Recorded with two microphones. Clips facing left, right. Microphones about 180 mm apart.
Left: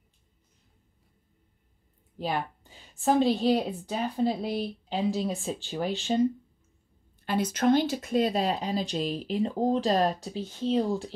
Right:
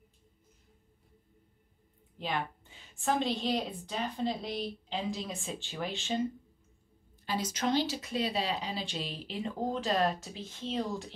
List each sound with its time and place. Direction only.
2.1 s a woman's voice: 40° left (ahead or behind)
7.2 s a woman's voice: 55° left (ahead or behind); by 11.1 s 30° left (ahead or behind)